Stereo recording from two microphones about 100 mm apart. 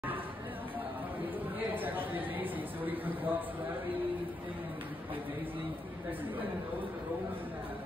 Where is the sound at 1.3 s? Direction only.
20° right (ahead or behind).